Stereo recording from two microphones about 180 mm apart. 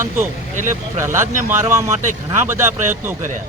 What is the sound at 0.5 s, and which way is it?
Speech, 45° right (ahead or behind).